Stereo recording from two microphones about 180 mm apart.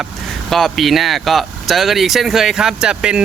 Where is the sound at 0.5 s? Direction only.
Centre (ahead or behind).